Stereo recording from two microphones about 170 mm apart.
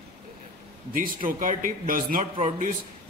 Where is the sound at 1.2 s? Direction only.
50° right (ahead or behind).